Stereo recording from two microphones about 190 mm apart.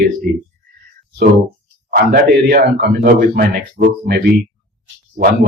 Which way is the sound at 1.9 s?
50° right (ahead or behind).